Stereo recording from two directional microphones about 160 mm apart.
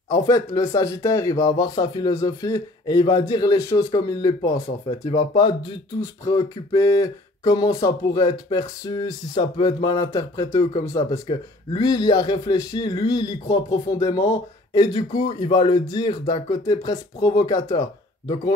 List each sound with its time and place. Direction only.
0.1 s speech: 20° left (ahead or behind)